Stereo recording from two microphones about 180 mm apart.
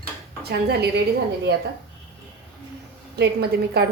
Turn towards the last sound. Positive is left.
turn(degrees=-65)  # may be behind; listen again after turning